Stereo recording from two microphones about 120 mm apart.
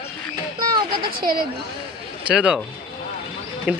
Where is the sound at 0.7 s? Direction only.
40° right (ahead or behind).